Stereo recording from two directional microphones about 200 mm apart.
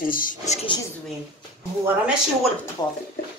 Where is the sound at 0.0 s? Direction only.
45° left (ahead or behind).